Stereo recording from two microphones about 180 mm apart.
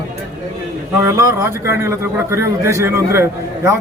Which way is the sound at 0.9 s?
15° right (ahead or behind).